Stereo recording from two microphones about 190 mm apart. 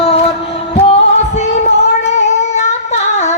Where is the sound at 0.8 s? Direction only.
35° left (ahead or behind).